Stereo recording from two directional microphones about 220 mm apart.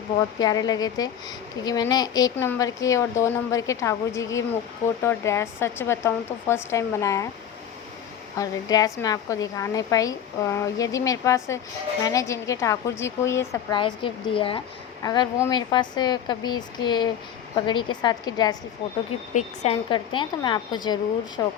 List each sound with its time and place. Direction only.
0.3 s a woman's voice: 15° left (ahead or behind)
8.4 s a woman's voice: 15° left (ahead or behind)
19.3 s a woman's voice: 30° left (ahead or behind)